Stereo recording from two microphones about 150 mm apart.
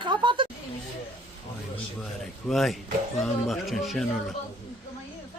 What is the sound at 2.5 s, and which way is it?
A man's voice, centre (ahead or behind).